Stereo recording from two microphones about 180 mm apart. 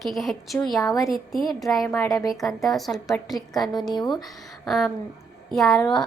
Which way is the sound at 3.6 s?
25° left (ahead or behind).